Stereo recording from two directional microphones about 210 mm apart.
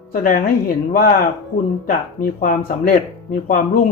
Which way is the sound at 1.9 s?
40° left (ahead or behind).